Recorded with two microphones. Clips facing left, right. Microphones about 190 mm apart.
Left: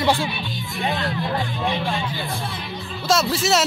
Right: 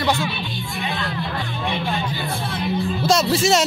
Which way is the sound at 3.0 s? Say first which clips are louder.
Right 1 dB; centre (ahead or behind).